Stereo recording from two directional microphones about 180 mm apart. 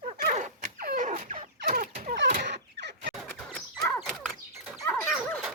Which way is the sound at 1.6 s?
45° right (ahead or behind).